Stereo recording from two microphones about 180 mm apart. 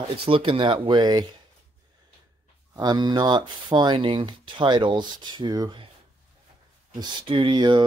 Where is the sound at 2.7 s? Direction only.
20° right (ahead or behind).